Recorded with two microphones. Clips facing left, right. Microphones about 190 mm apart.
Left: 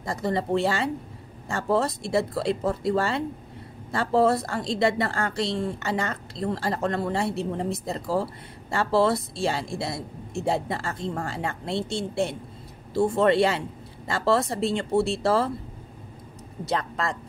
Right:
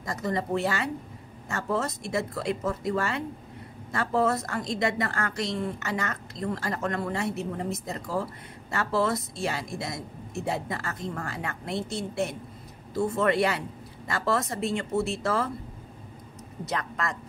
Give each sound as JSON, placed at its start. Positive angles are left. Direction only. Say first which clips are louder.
{"t": 0.0, "sound": "a woman's voice", "louder": "left 3 dB", "side_deg": 30}
{"t": 16.6, "sound": "a woman's voice", "louder": "left 4 dB", "side_deg": 30}